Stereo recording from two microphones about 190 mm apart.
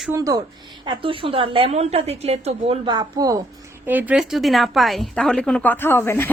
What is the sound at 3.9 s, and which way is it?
A woman's voice, 10° right (ahead or behind).